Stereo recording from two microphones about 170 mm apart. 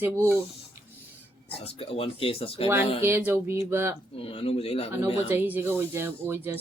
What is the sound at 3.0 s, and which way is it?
Speech, 10° right (ahead or behind).